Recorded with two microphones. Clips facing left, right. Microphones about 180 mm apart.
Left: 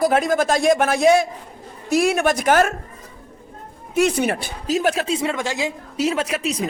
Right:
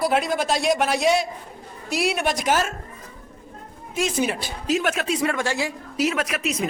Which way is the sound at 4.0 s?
65° left (ahead or behind).